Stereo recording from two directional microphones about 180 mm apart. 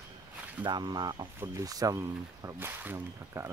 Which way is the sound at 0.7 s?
25° right (ahead or behind).